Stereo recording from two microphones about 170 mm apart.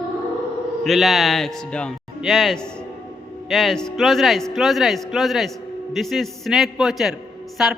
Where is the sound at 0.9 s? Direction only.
Centre (ahead or behind).